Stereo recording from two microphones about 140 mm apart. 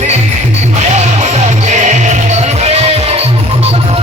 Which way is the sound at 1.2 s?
55° right (ahead or behind).